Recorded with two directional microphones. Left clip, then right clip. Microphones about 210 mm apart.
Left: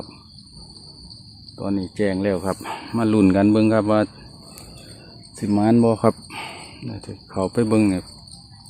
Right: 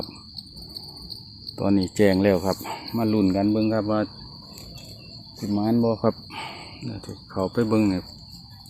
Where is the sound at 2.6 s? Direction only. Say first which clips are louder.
Left 3 dB; 15° left (ahead or behind).